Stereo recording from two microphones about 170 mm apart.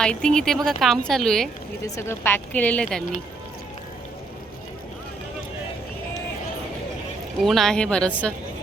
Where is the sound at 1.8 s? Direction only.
15° left (ahead or behind).